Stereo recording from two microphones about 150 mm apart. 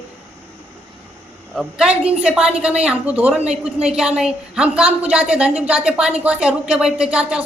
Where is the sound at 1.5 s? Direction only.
5° right (ahead or behind).